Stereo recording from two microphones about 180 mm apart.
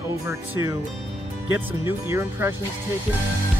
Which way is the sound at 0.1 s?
15° right (ahead or behind).